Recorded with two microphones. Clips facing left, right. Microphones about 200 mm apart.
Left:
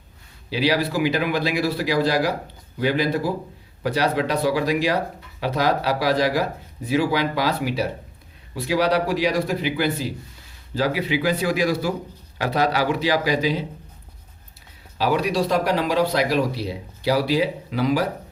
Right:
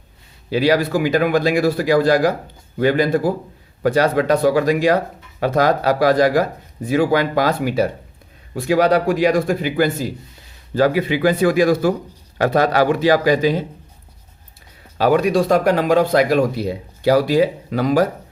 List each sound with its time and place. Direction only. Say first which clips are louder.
0.5 s speech: right 5 dB; 50° right (ahead or behind)
14.9 s speech: right 6 dB; 50° right (ahead or behind)